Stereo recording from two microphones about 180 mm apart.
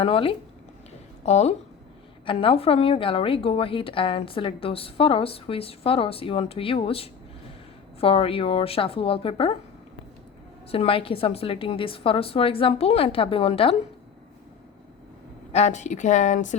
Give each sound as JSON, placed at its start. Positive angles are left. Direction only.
{"t": 0.0, "sound": "a woman's voice", "side_deg": 30}
{"t": 10.7, "sound": "a woman's voice", "side_deg": 30}
{"t": 15.5, "sound": "a woman's voice", "side_deg": 40}